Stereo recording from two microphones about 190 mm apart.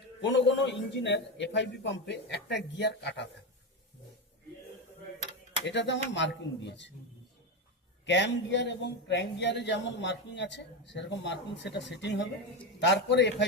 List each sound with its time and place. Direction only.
0.2 s speech: 65° left (ahead or behind)
5.6 s speech: 65° left (ahead or behind)
8.0 s speech: 70° left (ahead or behind)